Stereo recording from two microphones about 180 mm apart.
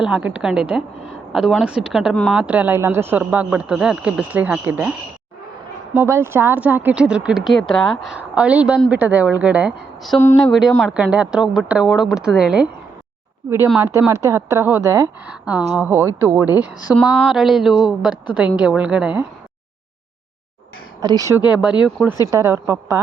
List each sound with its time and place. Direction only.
0.0 s speech: 5° right (ahead or behind)
10.2 s speech: 15° left (ahead or behind)
10.5 s speech: centre (ahead or behind)
14.1 s speech: 15° right (ahead or behind)
21.0 s speech: 20° right (ahead or behind)
21.5 s speech: 5° right (ahead or behind)
22.3 s speech: 15° right (ahead or behind)